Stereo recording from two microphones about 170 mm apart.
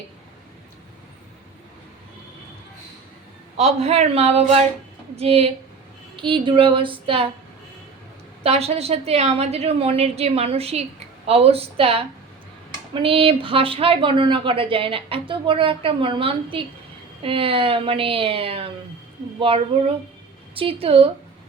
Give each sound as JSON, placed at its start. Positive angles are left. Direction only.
{"t": 3.6, "sound": "a woman's voice", "side_deg": -40}
{"t": 8.4, "sound": "a woman's voice", "side_deg": -35}